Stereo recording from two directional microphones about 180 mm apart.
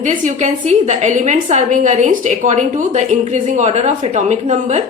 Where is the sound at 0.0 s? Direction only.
45° right (ahead or behind).